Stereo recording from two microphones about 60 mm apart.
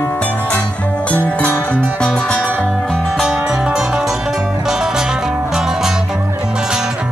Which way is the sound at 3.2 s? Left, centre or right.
Centre.